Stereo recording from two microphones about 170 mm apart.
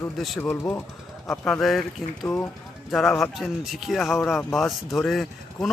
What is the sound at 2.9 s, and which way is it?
Speech, centre (ahead or behind).